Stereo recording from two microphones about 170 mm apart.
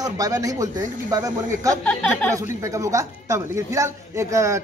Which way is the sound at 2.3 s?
20° right (ahead or behind).